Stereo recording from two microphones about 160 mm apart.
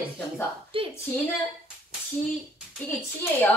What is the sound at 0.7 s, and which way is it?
Speech, 35° right (ahead or behind).